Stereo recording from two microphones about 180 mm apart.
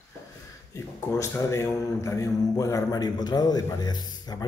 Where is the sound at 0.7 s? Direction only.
15° left (ahead or behind).